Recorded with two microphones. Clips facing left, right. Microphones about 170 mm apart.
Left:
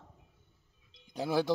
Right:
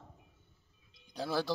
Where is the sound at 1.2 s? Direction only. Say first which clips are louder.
Left 4 dB; 15° left (ahead or behind).